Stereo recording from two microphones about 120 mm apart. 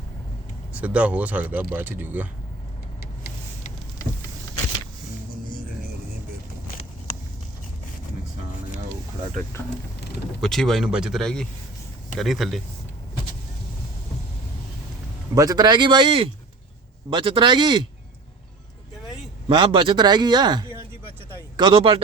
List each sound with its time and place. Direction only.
0.7 s speech: 10° right (ahead or behind)
10.4 s speech: 5° left (ahead or behind)
15.4 s speech: 30° right (ahead or behind)
19.5 s speech: 45° right (ahead or behind)